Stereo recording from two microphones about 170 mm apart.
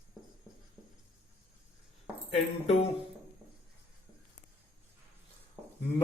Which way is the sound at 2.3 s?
35° left (ahead or behind).